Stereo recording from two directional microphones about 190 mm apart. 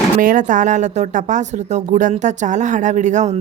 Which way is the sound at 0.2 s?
45° right (ahead or behind).